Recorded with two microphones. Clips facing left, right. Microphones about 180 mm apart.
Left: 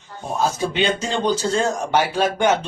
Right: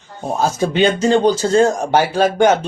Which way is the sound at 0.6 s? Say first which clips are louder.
Right 6 dB; 45° right (ahead or behind).